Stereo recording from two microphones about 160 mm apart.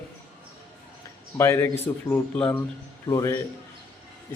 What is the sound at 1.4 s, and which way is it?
A man's voice, 15° left (ahead or behind).